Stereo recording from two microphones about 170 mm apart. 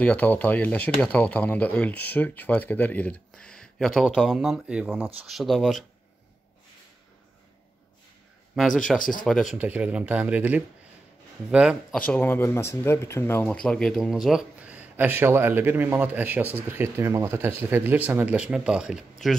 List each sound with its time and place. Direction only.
0.0 s speech: 10° left (ahead or behind)
8.5 s speech: centre (ahead or behind)
8.9 s speech: 55° left (ahead or behind)
9.2 s speech: centre (ahead or behind)
12.1 s speech: 10° left (ahead or behind)